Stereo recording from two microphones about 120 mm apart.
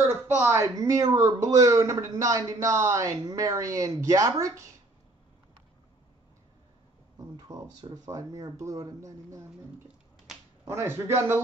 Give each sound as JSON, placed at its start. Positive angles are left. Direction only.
{"t": 0.4, "sound": "a man's voice", "side_deg": -20}
{"t": 7.2, "sound": "a man's voice", "side_deg": -30}
{"t": 10.6, "sound": "a man's voice", "side_deg": -20}